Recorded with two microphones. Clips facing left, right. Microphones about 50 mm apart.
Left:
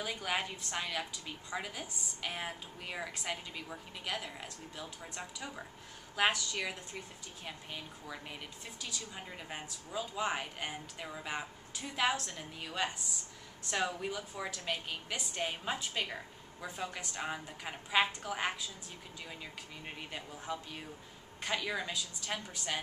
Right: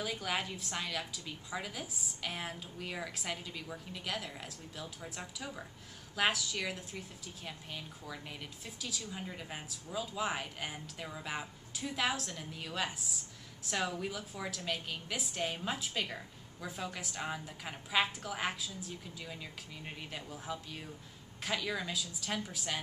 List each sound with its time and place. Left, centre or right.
0.0 s a woman's voice: centre